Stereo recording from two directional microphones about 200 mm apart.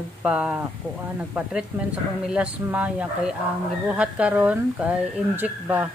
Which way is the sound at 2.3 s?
5° right (ahead or behind).